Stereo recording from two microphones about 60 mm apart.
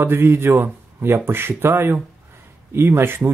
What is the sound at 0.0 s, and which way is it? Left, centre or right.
Speech, right.